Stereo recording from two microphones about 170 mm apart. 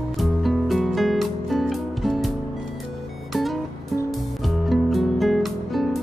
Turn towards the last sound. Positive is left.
turn(degrees=0)  # may be behind; listen again after turning